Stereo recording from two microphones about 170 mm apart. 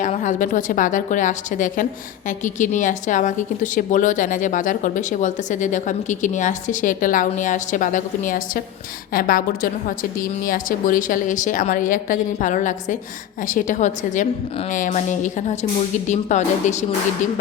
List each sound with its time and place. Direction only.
0.0 s a woman's voice: 50° left (ahead or behind)